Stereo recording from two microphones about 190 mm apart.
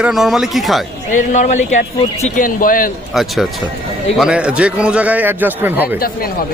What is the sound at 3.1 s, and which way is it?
A man's voice, centre (ahead or behind).